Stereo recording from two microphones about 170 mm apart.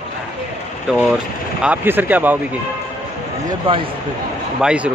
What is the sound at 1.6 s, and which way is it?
Speech, 10° right (ahead or behind).